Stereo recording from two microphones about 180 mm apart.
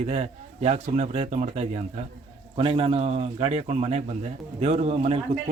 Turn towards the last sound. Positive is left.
turn(degrees=-35)  # may be behind; listen again after turning